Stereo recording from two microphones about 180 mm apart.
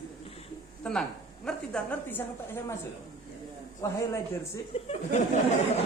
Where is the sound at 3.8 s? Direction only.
15° left (ahead or behind).